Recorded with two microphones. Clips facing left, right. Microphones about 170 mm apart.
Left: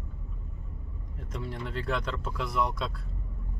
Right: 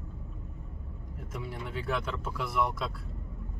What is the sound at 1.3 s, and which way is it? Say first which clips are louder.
Speech: left 2 dB; 5° right (ahead or behind).